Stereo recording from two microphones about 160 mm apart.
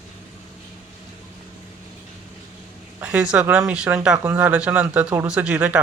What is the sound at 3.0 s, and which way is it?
Speech, 10° right (ahead or behind).